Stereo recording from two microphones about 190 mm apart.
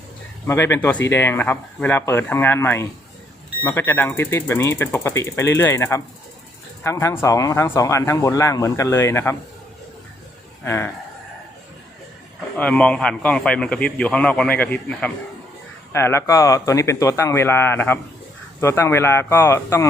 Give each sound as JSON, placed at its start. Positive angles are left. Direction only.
{"t": 0.4, "sound": "a man's voice", "side_deg": 15}
{"t": 10.6, "sound": "speech", "side_deg": 10}
{"t": 12.5, "sound": "a man's voice", "side_deg": 5}